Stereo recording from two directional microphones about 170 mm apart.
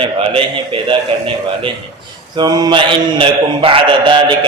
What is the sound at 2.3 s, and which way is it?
A man's voice, 25° right (ahead or behind).